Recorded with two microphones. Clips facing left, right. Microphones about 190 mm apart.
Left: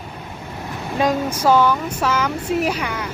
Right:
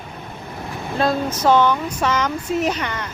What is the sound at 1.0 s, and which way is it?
Speech, 10° left (ahead or behind).